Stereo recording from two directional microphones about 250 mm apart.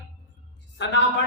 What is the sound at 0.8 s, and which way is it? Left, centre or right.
Speech, left.